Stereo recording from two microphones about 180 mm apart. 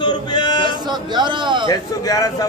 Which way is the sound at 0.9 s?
25° right (ahead or behind).